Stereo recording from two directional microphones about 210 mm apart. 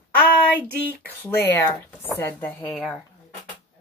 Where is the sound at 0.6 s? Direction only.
45° right (ahead or behind).